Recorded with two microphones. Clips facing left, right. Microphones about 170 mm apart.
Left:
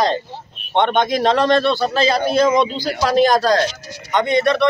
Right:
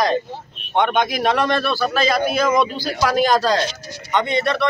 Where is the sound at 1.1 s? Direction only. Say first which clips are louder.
Left 4 dB; 25° left (ahead or behind).